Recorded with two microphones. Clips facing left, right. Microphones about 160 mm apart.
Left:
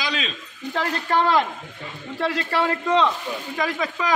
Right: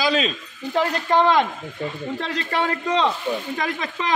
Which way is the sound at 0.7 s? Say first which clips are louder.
Right 3 dB; 15° right (ahead or behind).